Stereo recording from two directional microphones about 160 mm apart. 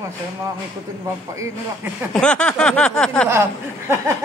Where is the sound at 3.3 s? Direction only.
15° right (ahead or behind).